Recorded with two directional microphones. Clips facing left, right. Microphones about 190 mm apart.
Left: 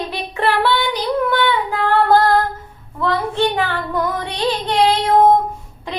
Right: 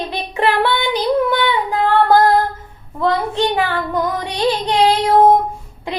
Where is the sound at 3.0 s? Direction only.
15° right (ahead or behind).